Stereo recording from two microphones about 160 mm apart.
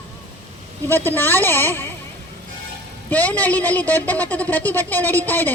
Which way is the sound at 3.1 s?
10° left (ahead or behind).